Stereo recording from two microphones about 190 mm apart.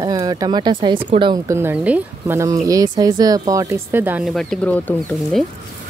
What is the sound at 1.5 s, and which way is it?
Speech, 10° right (ahead or behind).